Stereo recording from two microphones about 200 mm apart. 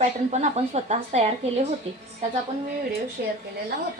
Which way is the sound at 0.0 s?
35° right (ahead or behind).